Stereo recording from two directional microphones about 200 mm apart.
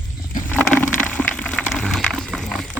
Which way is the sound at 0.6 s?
5° left (ahead or behind).